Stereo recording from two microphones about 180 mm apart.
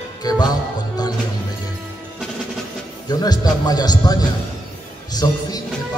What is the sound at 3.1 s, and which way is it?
A man's voice, 20° left (ahead or behind).